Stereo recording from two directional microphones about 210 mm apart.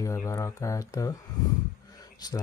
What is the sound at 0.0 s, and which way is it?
Speech, 15° left (ahead or behind).